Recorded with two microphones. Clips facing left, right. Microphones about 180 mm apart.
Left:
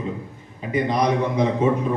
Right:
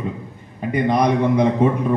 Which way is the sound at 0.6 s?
55° right (ahead or behind).